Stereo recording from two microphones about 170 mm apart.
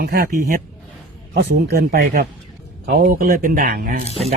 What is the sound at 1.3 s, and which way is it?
Speech, 75° right (ahead or behind).